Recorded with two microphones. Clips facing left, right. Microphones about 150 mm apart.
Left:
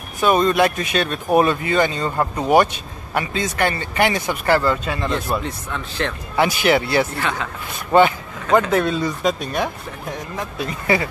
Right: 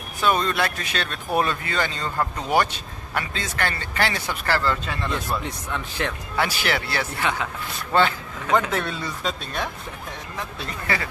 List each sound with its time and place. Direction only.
0.2 s a man's voice: 15° left (ahead or behind)
5.4 s speech: 15° right (ahead or behind)
6.3 s a man's voice: 20° left (ahead or behind)
7.2 s speech: 15° right (ahead or behind)
8.5 s a man's voice: 10° left (ahead or behind)